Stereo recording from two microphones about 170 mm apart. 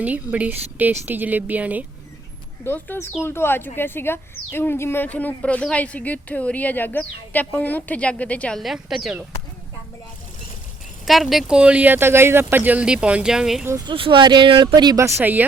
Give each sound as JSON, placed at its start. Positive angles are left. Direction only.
{"t": 0.0, "sound": "speech", "side_deg": -10}
{"t": 2.6, "sound": "speech", "side_deg": 10}
{"t": 11.0, "sound": "speech", "side_deg": 0}
{"t": 13.7, "sound": "speech", "side_deg": -20}
{"t": 13.9, "sound": "speech", "side_deg": -30}
{"t": 15.2, "sound": "speech", "side_deg": -10}